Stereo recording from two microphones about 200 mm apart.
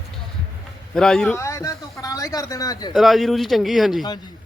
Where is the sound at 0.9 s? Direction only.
5° left (ahead or behind).